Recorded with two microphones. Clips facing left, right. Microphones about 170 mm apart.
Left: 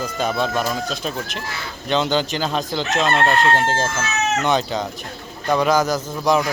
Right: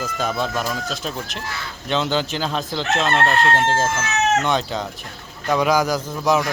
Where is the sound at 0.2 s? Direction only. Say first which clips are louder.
Left 3 dB; centre (ahead or behind).